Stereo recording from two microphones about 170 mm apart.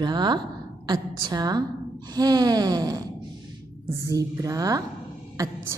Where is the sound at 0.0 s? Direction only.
25° right (ahead or behind).